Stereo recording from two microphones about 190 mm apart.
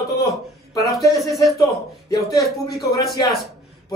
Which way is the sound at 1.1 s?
Centre (ahead or behind).